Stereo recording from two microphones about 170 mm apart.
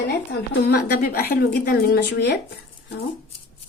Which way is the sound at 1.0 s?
60° left (ahead or behind).